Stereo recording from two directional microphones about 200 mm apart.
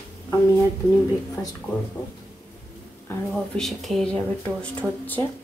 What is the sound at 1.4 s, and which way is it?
Speech, 15° left (ahead or behind).